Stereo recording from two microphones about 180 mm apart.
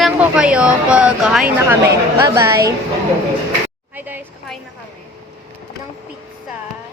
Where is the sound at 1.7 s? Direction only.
15° right (ahead or behind).